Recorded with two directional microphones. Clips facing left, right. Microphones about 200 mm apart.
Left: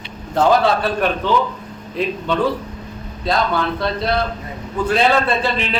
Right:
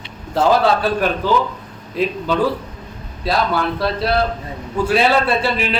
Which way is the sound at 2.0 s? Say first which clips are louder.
Right 2 dB; centre (ahead or behind).